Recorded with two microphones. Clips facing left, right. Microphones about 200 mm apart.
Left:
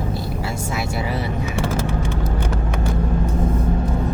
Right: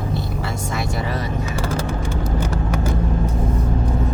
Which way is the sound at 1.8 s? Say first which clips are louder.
Left 1 dB; 60° left (ahead or behind).